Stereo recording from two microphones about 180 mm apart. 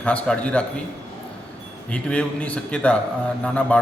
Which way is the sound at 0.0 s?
5° left (ahead or behind).